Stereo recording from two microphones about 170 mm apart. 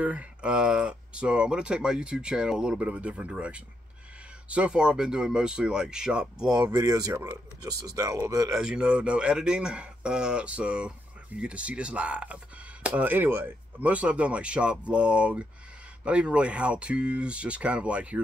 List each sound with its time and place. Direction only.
0.0 s speech: 5° right (ahead or behind)
6.6 s speech: 20° right (ahead or behind)
8.5 s speech: 5° right (ahead or behind)